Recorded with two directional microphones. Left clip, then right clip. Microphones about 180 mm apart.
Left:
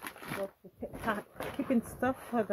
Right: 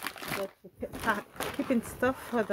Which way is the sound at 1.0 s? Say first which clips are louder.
Right 4 dB; 10° right (ahead or behind).